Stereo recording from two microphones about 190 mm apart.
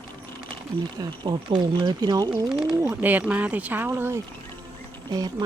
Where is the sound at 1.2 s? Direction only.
25° right (ahead or behind).